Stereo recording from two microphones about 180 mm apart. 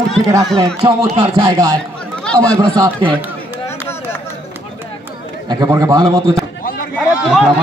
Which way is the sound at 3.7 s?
15° left (ahead or behind).